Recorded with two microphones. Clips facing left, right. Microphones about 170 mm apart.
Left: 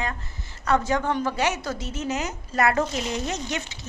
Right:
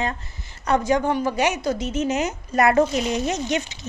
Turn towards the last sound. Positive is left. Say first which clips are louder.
# right 6 dB
turn(degrees=-20)  # may be behind; listen again after turning